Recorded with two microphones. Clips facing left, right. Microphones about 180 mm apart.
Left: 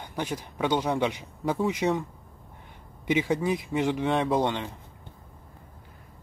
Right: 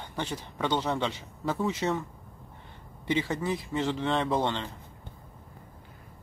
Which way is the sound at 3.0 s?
15° left (ahead or behind).